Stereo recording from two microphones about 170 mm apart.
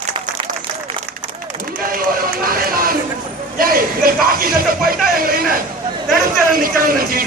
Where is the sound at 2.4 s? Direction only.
60° right (ahead or behind).